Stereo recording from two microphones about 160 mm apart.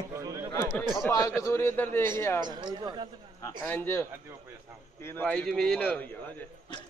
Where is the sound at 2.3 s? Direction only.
25° right (ahead or behind).